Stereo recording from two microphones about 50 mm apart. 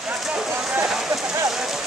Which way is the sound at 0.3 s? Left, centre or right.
Centre.